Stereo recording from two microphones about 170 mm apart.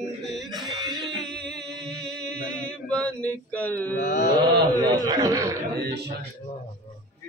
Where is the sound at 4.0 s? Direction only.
50° left (ahead or behind).